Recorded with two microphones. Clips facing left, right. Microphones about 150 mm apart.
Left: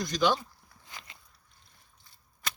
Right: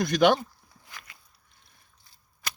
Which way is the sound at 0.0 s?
60° right (ahead or behind).